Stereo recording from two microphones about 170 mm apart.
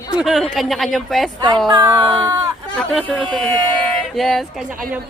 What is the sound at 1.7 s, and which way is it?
Music, 20° right (ahead or behind).